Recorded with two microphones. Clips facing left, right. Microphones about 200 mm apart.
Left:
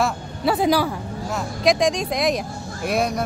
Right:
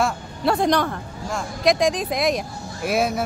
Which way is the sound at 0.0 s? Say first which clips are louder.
Even; centre (ahead or behind).